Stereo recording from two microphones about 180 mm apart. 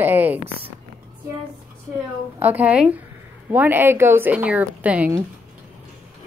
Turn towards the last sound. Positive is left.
turn(degrees=-10)  # may be behind; listen again after turning